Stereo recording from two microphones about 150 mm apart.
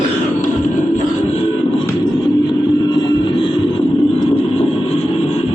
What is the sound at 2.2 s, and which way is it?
Music, 30° left (ahead or behind).